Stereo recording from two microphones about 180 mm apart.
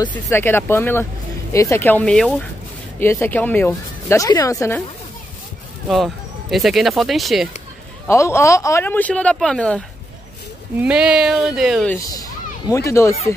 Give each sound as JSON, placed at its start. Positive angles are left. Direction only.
{"t": 0.3, "sound": "speech", "side_deg": 10}
{"t": 5.9, "sound": "speech", "side_deg": 0}
{"t": 8.1, "sound": "speech", "side_deg": 15}
{"t": 10.8, "sound": "speech", "side_deg": -5}
{"t": 12.1, "sound": "a sound", "side_deg": 20}